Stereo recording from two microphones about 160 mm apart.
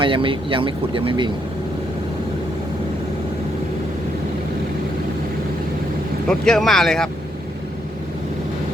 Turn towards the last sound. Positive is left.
turn(degrees=5)  # may be behind; listen again after turning